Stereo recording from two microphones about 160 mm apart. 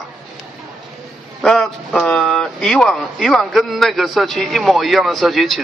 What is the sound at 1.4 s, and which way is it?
Speech, 5° left (ahead or behind).